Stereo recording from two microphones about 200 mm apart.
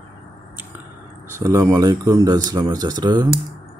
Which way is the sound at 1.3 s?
15° right (ahead or behind).